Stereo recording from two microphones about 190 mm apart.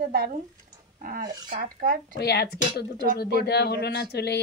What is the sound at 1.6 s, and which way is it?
Speech, 45° right (ahead or behind).